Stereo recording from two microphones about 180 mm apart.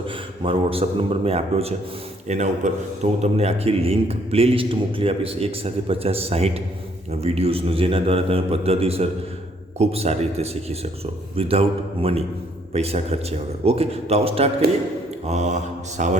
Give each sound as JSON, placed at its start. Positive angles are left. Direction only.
{"t": 0.4, "sound": "a man's voice", "side_deg": -30}